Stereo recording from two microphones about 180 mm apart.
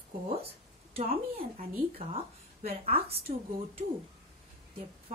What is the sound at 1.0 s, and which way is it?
A woman's voice, 35° right (ahead or behind).